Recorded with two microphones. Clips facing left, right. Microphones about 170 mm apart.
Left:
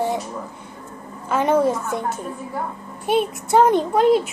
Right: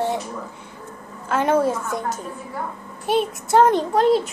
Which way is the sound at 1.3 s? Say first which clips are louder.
Left 1 dB; centre (ahead or behind).